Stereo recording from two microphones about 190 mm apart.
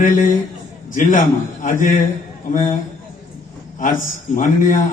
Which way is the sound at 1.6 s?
45° left (ahead or behind).